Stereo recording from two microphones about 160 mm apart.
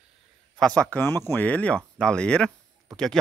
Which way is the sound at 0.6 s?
5° left (ahead or behind).